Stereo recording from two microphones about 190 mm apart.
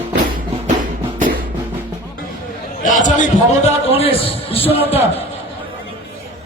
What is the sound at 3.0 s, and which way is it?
Music, 40° left (ahead or behind).